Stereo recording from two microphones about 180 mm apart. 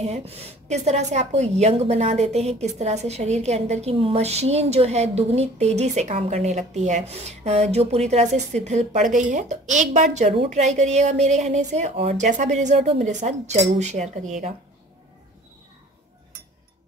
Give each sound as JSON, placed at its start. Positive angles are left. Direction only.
{"t": 0.0, "sound": "a woman's voice", "side_deg": -35}